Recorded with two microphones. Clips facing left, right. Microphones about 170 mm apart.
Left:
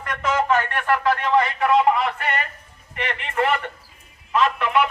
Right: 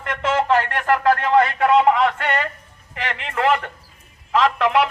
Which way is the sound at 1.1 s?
50° right (ahead or behind).